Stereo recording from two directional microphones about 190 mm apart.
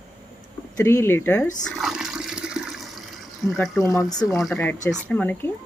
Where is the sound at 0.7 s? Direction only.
15° left (ahead or behind).